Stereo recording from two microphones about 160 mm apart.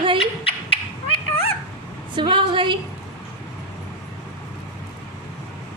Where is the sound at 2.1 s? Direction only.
30° right (ahead or behind).